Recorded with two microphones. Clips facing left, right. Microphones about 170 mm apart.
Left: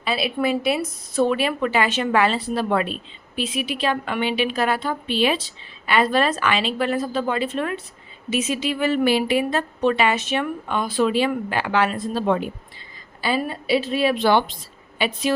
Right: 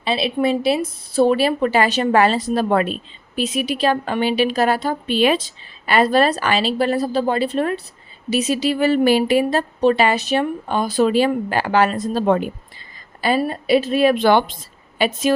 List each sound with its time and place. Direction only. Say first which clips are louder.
0.0 s a woman's voice: right 3 dB; 25° right (ahead or behind); by 12.4 s 45° right (ahead or behind)
13.4 s a woman's voice: right 5 dB; 50° right (ahead or behind)